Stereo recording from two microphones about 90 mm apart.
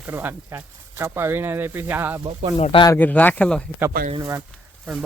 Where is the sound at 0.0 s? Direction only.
20° right (ahead or behind).